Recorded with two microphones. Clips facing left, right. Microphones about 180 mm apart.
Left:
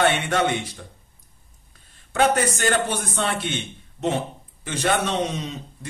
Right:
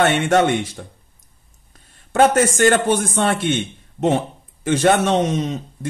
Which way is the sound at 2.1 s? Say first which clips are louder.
Right 6 dB; 45° right (ahead or behind).